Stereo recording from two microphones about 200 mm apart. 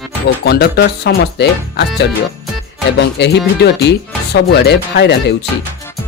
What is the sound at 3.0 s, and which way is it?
Speech, 60° left (ahead or behind).